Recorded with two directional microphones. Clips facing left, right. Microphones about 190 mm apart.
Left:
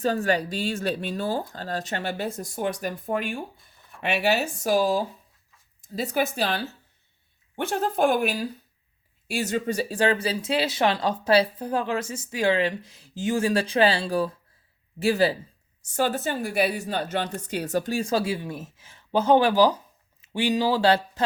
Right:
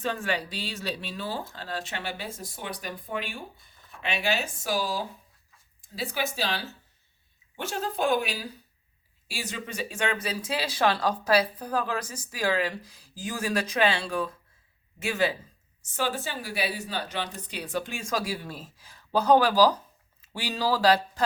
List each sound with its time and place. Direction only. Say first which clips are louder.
0.0 s a woman's voice: left 6 dB; 40° left (ahead or behind)
4.6 s a woman's voice: left 10 dB; 40° left (ahead or behind)
6.0 s a woman's voice: left 5 dB; 45° left (ahead or behind)
16.0 s a woman's voice: left 6 dB; 45° left (ahead or behind); by 21.2 s 25° left (ahead or behind)